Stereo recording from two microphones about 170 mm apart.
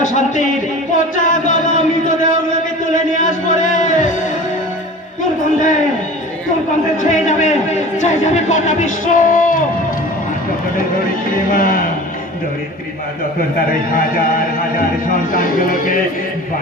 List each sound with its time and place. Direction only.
0.0 s speech: 45° left (ahead or behind)
1.1 s music: 50° left (ahead or behind)
2.9 s a sound: 50° left (ahead or behind)
7.1 s speech: 45° left (ahead or behind)
11.5 s speech: 55° left (ahead or behind)
15.3 s speech: 55° left (ahead or behind)